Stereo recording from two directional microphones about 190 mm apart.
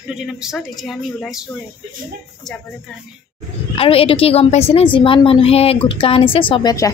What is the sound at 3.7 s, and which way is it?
Speech, 30° left (ahead or behind).